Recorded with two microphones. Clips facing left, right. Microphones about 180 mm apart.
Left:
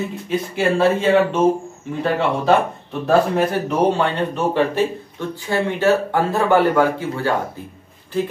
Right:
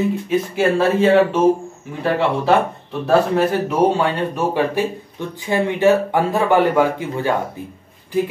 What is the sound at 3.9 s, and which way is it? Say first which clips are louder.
Speech: right 1 dB; 10° right (ahead or behind).